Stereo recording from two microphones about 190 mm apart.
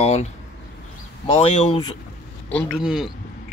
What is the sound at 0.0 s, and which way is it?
Speech, 35° left (ahead or behind).